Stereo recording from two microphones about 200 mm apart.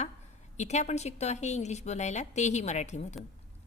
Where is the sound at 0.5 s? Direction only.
35° left (ahead or behind).